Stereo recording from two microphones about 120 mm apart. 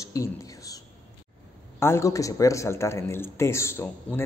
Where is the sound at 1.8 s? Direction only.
25° left (ahead or behind).